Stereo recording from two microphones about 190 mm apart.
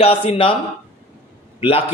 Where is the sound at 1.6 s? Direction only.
30° left (ahead or behind).